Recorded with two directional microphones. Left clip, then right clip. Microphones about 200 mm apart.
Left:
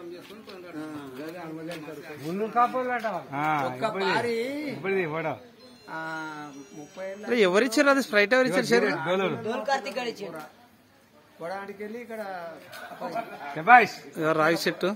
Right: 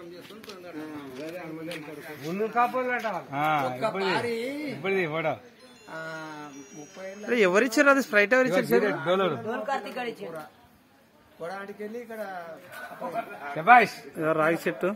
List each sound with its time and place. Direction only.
2.2 s a man's voice: 20° right (ahead or behind)
3.3 s speech: 50° right (ahead or behind)
7.2 s a man's voice: centre (ahead or behind)
8.8 s speech: 45° right (ahead or behind)
9.5 s speech: 20° left (ahead or behind)
11.4 s speech: 60° right (ahead or behind)
13.6 s speech: 50° right (ahead or behind)
14.1 s a man's voice: centre (ahead or behind)